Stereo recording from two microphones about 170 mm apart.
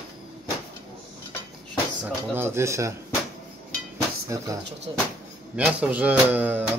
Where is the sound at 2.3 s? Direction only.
15° right (ahead or behind).